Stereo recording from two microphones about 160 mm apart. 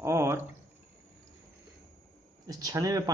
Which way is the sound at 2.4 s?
25° right (ahead or behind).